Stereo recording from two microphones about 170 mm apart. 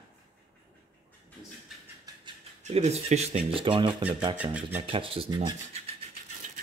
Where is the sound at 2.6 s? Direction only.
40° right (ahead or behind); by 4.4 s 25° right (ahead or behind).